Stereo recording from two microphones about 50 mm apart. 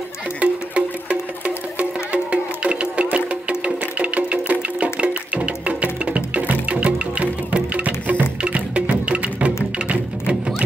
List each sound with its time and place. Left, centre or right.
0.4 s music: right